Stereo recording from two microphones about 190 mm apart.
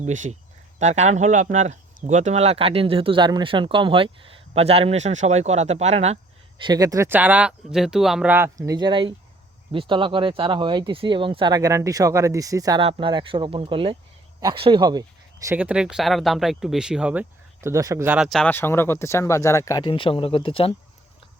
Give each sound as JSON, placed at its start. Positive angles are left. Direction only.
{"t": 0.0, "sound": "speech", "side_deg": -40}
{"t": 6.6, "sound": "speech", "side_deg": -20}
{"t": 15.4, "sound": "speech", "side_deg": -10}